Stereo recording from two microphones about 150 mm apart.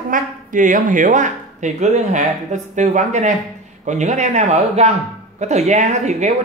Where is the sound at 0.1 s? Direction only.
60° right (ahead or behind).